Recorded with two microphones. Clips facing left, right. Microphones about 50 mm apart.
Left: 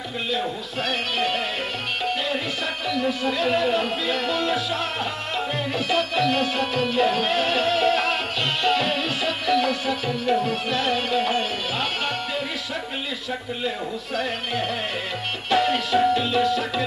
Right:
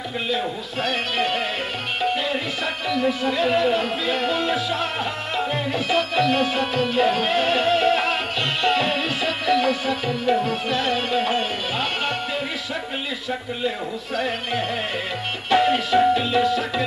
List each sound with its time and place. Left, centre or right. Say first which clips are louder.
0.3 s a man's voice: even; centre
1.1 s music: right 1 dB; centre
4.1 s music: right 2 dB; centre
13.3 s music: right 3 dB; centre